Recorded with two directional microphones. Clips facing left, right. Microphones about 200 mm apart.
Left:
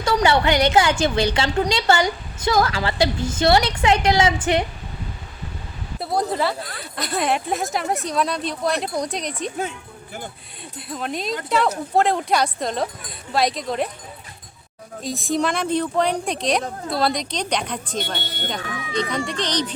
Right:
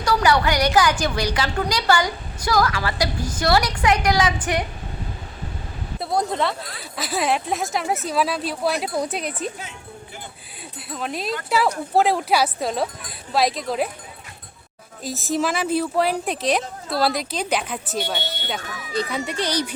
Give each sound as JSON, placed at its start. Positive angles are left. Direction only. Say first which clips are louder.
{"t": 0.0, "sound": "a woman's voice", "louder": "left 1 dB", "side_deg": 25}
{"t": 6.0, "sound": "speech", "louder": "even", "side_deg": 0}
{"t": 10.8, "sound": "speech", "louder": "left 1 dB", "side_deg": 0}
{"t": 15.0, "sound": "speech", "louder": "left 1 dB", "side_deg": 0}